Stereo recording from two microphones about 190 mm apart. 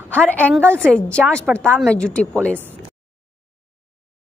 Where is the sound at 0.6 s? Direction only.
10° right (ahead or behind).